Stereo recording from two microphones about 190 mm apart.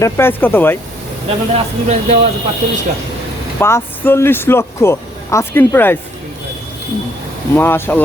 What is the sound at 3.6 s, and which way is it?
Speech, 15° left (ahead or behind).